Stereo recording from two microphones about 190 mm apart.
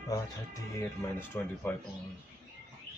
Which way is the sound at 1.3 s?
10° left (ahead or behind).